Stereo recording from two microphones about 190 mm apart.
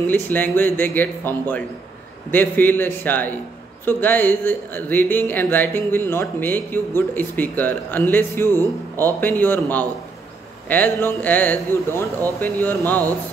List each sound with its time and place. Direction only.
0.1 s speech: 10° left (ahead or behind)